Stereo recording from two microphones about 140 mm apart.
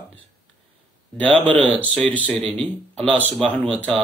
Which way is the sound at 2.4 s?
45° right (ahead or behind).